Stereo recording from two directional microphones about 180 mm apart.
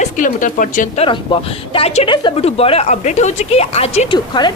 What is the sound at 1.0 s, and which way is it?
A woman's voice, 30° left (ahead or behind).